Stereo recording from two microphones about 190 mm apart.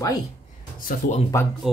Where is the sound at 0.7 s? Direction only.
45° left (ahead or behind).